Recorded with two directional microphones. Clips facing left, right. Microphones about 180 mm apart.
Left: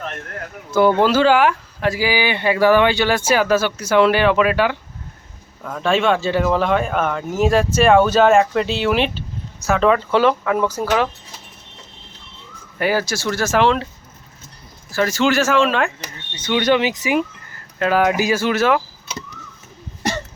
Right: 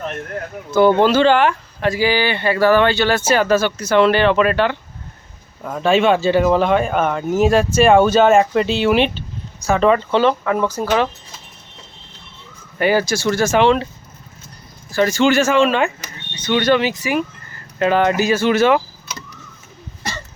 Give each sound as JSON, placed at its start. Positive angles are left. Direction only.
{"t": 0.7, "sound": "speech", "side_deg": 5}
{"t": 5.6, "sound": "speech", "side_deg": -5}
{"t": 12.8, "sound": "speech", "side_deg": 0}
{"t": 14.8, "sound": "speech", "side_deg": 0}
{"t": 16.4, "sound": "speech", "side_deg": 10}
{"t": 17.7, "sound": "speech", "side_deg": 5}